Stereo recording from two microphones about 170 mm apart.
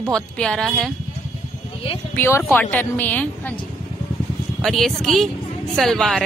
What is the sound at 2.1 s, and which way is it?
Speech, 15° left (ahead or behind).